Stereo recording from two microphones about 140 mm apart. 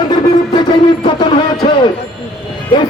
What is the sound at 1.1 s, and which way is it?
Music, 30° left (ahead or behind).